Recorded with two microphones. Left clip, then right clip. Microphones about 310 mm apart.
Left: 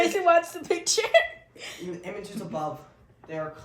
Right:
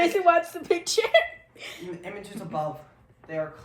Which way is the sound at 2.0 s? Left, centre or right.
Centre.